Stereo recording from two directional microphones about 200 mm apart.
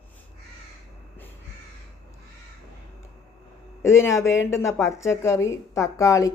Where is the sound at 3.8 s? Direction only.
15° left (ahead or behind).